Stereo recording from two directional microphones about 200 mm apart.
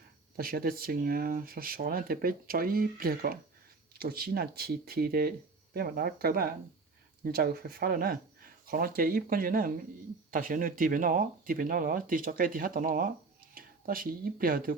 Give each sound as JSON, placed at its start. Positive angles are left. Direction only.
{"t": 0.3, "sound": "speech", "side_deg": -45}